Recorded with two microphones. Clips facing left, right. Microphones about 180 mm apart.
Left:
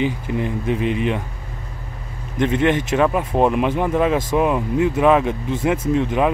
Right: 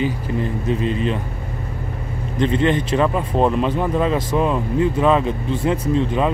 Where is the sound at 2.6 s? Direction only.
10° left (ahead or behind).